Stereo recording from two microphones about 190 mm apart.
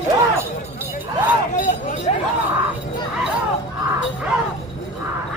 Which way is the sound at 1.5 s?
45° left (ahead or behind).